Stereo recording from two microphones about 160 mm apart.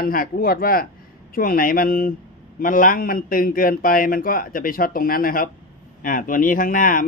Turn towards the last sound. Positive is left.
turn(degrees=60)  # may be behind; listen again after turning